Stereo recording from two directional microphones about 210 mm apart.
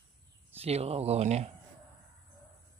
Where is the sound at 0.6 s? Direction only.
30° right (ahead or behind).